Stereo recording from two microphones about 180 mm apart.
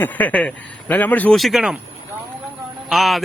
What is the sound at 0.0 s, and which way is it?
Speech, 10° left (ahead or behind).